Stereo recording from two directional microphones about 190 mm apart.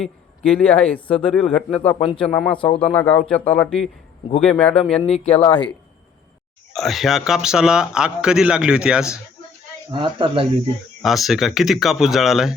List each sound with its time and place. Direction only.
0.5 s speech: 5° left (ahead or behind)
5.0 s speech: 30° left (ahead or behind)
6.7 s speech: centre (ahead or behind)
9.9 s speech: 25° right (ahead or behind)
11.0 s speech: centre (ahead or behind)